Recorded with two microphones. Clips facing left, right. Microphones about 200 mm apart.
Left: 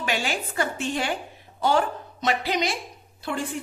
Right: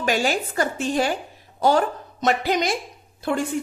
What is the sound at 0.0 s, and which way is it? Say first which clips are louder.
A woman's voice: right 6 dB; 40° right (ahead or behind).